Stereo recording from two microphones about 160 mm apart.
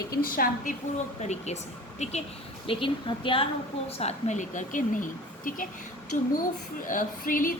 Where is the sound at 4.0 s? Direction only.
45° left (ahead or behind); by 7.5 s 60° left (ahead or behind).